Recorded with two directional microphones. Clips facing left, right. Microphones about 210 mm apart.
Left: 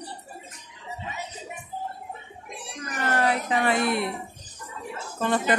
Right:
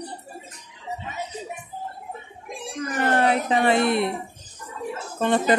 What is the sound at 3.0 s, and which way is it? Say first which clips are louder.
A woman's voice: right 3 dB; 25° right (ahead or behind).